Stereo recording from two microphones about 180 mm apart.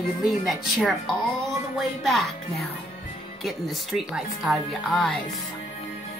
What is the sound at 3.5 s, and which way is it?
A woman's voice, centre (ahead or behind).